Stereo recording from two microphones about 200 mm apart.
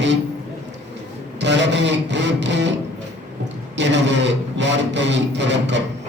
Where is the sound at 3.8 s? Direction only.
60° right (ahead or behind).